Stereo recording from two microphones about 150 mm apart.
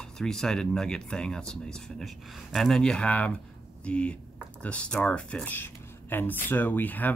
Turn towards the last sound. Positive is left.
turn(degrees=10)  # may be behind; listen again after turning